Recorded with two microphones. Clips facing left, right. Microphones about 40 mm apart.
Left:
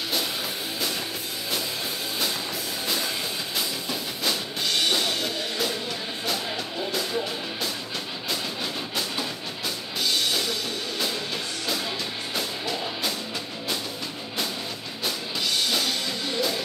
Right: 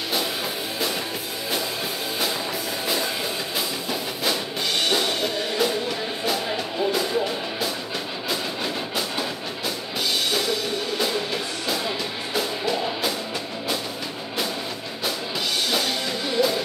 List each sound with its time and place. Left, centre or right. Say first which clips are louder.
3.5 s music: right 2 dB; centre
8.9 s music: right 3 dB; centre
12.4 s music: right 6 dB; centre
15.7 s music: right 2 dB; centre